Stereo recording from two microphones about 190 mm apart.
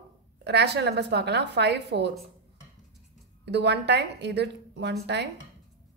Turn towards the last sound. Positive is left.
turn(degrees=-60)  # may be behind; listen again after turning